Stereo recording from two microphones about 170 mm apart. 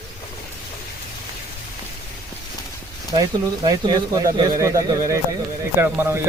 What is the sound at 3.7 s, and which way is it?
A man's voice, 25° right (ahead or behind).